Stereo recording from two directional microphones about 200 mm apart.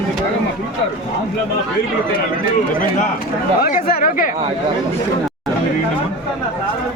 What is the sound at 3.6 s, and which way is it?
Chatter, 45° left (ahead or behind).